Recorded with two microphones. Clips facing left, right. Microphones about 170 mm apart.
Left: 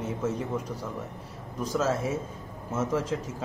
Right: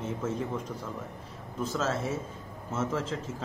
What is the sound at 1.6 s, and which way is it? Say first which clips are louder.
A man's voice: left 3 dB; 10° left (ahead or behind).